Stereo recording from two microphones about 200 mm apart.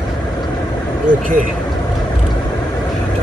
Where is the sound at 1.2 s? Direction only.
40° right (ahead or behind).